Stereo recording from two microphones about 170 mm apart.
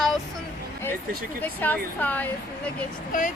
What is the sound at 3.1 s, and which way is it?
Speech, 50° left (ahead or behind).